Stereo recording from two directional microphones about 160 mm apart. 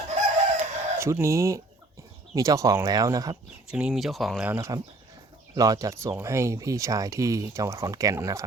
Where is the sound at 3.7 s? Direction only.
5° right (ahead or behind).